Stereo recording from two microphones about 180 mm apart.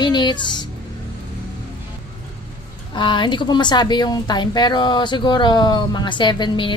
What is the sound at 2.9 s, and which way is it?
Speech, 25° left (ahead or behind).